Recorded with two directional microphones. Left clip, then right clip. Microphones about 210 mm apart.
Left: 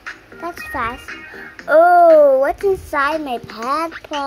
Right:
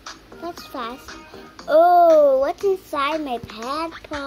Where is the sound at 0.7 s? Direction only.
Centre (ahead or behind).